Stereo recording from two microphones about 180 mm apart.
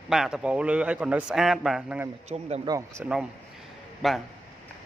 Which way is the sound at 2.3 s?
35° right (ahead or behind).